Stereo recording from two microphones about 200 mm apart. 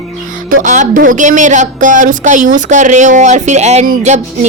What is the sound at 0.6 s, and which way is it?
Speech, 40° right (ahead or behind).